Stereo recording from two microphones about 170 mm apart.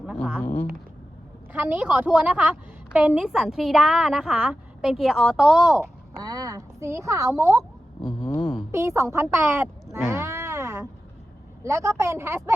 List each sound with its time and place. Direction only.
0.3 s speech: 10° left (ahead or behind)
1.5 s a woman's voice: 10° right (ahead or behind)
6.2 s a woman's voice: 20° right (ahead or behind)
8.4 s a woman's voice: centre (ahead or behind)
8.7 s a woman's voice: 15° right (ahead or behind)
10.1 s music: 15° right (ahead or behind)
11.6 s a woman's voice: 15° right (ahead or behind)